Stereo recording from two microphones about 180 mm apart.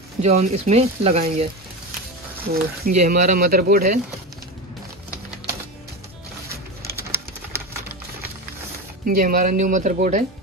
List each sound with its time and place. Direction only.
0.2 s speech: 35° right (ahead or behind)
2.5 s speech: 55° right (ahead or behind)
9.0 s speech: 50° right (ahead or behind)